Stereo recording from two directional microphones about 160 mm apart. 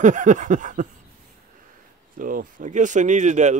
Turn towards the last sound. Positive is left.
turn(degrees=-50)  # may be behind; listen again after turning